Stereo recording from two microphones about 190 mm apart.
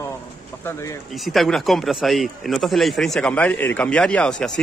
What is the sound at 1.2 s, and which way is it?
A man's voice, centre (ahead or behind).